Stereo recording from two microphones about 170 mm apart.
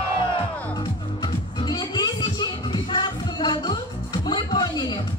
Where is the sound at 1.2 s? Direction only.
25° left (ahead or behind).